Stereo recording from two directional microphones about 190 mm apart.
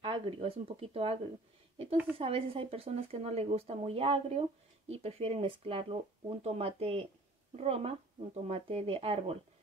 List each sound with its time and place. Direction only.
0.0 s speech: 30° right (ahead or behind)